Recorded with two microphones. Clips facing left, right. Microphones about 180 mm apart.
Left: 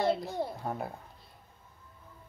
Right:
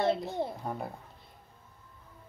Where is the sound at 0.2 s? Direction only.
20° right (ahead or behind).